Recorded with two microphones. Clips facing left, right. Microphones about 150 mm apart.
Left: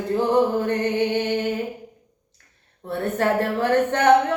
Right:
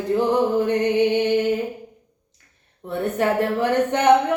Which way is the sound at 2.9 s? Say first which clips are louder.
Right 1 dB; 15° right (ahead or behind).